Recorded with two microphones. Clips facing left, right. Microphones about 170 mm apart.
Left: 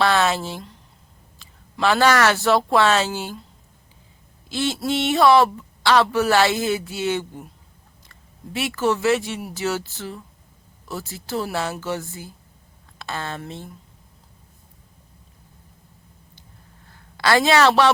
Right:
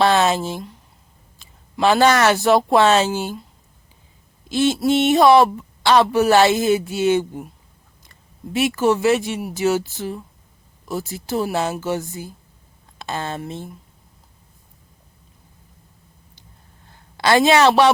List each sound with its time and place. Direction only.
0.0 s a woman's voice: 20° right (ahead or behind)
4.4 s speech: 15° right (ahead or behind)
8.5 s a woman's voice: 15° right (ahead or behind)
17.2 s a woman's voice: 20° right (ahead or behind)